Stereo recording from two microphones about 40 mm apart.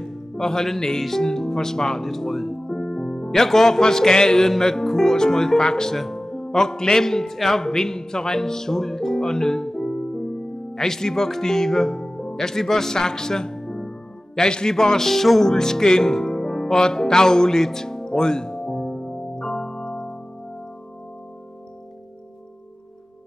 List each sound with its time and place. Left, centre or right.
0.0 s music: centre
1.0 s a man's voice: centre
15.5 s music: centre